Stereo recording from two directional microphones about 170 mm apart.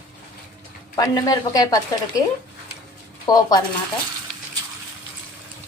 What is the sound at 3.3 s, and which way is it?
Speech, 20° left (ahead or behind).